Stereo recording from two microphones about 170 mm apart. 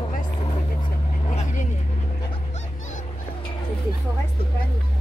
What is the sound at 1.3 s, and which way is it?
Speech, 45° left (ahead or behind).